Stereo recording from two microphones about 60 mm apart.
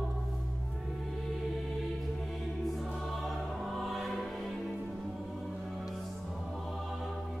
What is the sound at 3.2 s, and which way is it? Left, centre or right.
Music, centre.